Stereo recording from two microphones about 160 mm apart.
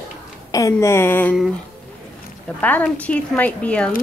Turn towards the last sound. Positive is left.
turn(degrees=5)  # may be behind; listen again after turning